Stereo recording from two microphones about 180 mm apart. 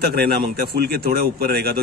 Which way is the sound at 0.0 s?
60° right (ahead or behind).